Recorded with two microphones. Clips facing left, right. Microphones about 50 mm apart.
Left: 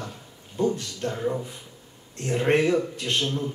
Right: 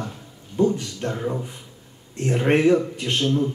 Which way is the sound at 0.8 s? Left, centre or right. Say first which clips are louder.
Right 2 dB; right.